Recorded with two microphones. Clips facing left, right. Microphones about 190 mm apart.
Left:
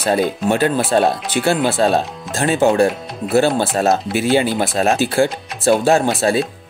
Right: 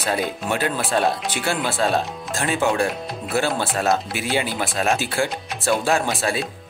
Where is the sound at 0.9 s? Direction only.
35° left (ahead or behind).